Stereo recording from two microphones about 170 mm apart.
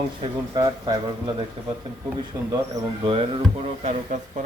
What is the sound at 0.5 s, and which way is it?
Speech, 25° right (ahead or behind).